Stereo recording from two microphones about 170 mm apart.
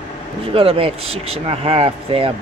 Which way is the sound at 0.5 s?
35° right (ahead or behind).